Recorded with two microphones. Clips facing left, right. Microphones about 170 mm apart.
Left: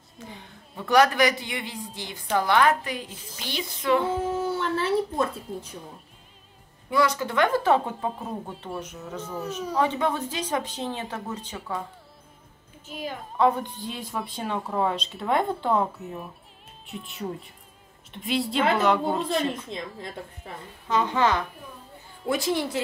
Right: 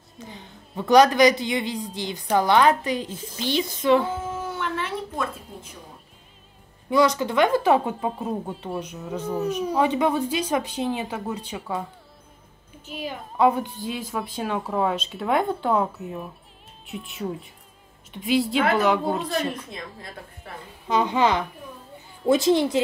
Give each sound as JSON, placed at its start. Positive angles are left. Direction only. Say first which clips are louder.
{"t": 0.8, "sound": "a woman's voice", "louder": "right 4 dB", "side_deg": -20}
{"t": 4.4, "sound": "dog", "louder": "left 3 dB", "side_deg": 35}
{"t": 6.9, "sound": "speech", "louder": "right 4 dB", "side_deg": -20}
{"t": 8.7, "sound": "speech", "louder": "right 3 dB", "side_deg": -15}
{"t": 13.4, "sound": "speech", "louder": "right 2 dB", "side_deg": -10}
{"t": 19.2, "sound": "a woman's voice", "louder": "even", "side_deg": 25}
{"t": 20.8, "sound": "a woman's voice", "louder": "right 2 dB", "side_deg": -15}